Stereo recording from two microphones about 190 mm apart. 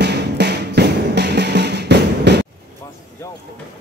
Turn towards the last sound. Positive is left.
turn(degrees=-60)  # may be behind; listen again after turning